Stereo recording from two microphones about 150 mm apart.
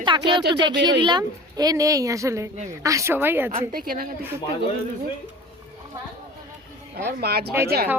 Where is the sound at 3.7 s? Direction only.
75° right (ahead or behind).